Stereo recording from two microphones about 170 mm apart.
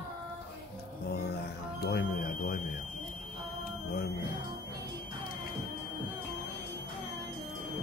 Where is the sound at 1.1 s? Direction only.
70° left (ahead or behind).